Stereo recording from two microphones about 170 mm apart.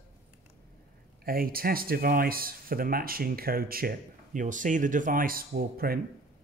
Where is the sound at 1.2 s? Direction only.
60° right (ahead or behind).